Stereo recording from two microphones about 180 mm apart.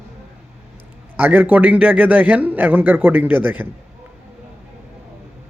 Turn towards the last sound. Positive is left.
turn(degrees=-10)  # may be behind; listen again after turning